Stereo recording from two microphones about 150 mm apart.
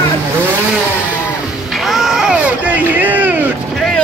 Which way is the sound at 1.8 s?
Centre (ahead or behind).